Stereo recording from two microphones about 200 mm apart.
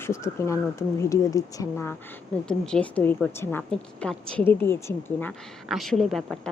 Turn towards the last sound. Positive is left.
turn(degrees=0)  # may be behind; listen again after turning